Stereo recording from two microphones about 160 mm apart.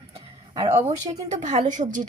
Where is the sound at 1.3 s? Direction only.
45° right (ahead or behind).